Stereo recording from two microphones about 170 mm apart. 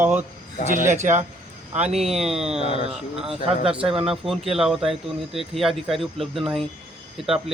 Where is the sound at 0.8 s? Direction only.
45° right (ahead or behind).